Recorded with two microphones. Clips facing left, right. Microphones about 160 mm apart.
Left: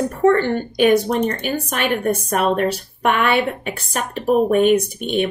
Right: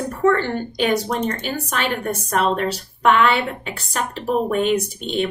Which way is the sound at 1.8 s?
55° left (ahead or behind).